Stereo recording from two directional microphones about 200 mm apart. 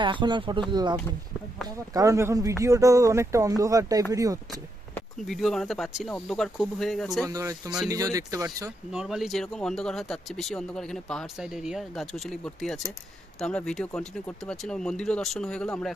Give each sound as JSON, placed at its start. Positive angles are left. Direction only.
{"t": 0.0, "sound": "a man's voice", "side_deg": -25}
{"t": 4.9, "sound": "speech", "side_deg": 0}
{"t": 7.2, "sound": "a man's voice", "side_deg": -15}
{"t": 8.9, "sound": "speech", "side_deg": 0}